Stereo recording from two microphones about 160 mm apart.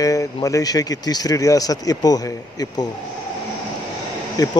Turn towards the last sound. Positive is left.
turn(degrees=25)  # may be behind; listen again after turning